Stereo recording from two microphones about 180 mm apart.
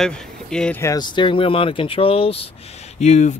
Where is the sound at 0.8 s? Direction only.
20° left (ahead or behind); by 3.3 s 40° left (ahead or behind).